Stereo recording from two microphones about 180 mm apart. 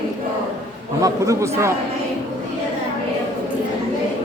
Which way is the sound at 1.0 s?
15° right (ahead or behind).